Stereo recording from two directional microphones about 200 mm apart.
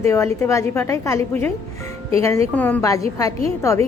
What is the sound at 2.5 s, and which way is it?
Speech, 10° left (ahead or behind).